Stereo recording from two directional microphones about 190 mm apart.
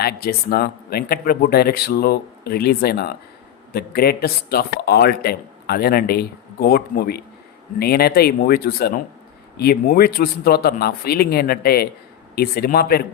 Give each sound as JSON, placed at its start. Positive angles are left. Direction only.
{"t": 0.0, "sound": "a man's voice", "side_deg": 55}